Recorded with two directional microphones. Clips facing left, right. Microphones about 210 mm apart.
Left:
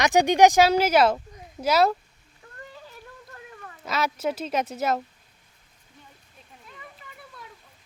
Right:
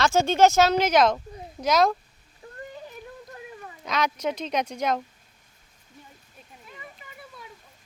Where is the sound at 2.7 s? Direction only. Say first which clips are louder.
Right 5 dB; 20° right (ahead or behind).